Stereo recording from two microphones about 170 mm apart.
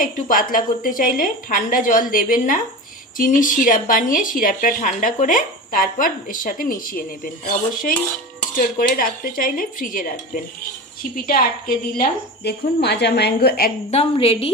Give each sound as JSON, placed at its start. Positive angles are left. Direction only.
{"t": 0.0, "sound": "speech", "side_deg": 55}
{"t": 12.4, "sound": "a woman's voice", "side_deg": 75}
{"t": 13.9, "sound": "a woman's voice", "side_deg": 35}